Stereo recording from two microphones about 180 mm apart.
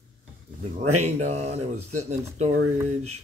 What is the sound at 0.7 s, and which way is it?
Speech, 40° right (ahead or behind).